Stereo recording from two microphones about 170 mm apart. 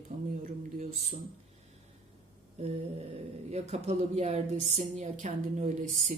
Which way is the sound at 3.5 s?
40° right (ahead or behind).